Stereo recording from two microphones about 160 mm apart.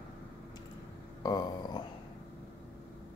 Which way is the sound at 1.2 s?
25° left (ahead or behind).